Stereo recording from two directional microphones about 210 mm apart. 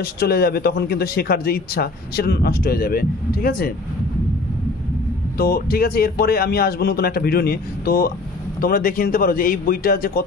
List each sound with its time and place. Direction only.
0.0 s speech: 50° left (ahead or behind)
5.4 s speech: 45° left (ahead or behind)